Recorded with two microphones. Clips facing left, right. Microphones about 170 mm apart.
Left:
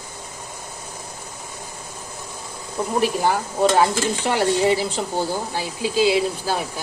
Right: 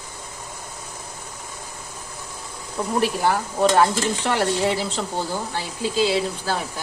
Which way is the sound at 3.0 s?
Centre (ahead or behind).